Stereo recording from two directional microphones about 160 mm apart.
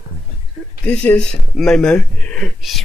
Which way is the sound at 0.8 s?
10° left (ahead or behind).